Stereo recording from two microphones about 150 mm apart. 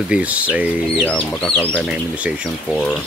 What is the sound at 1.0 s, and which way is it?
Speech, 5° left (ahead or behind).